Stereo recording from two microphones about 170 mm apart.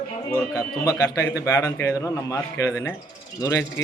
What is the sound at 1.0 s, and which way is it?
A man's voice, 20° left (ahead or behind).